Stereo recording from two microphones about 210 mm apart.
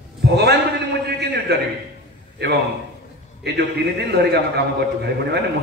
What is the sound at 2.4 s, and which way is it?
A man's voice, 50° right (ahead or behind).